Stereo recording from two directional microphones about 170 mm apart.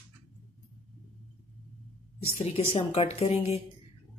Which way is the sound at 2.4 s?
35° left (ahead or behind).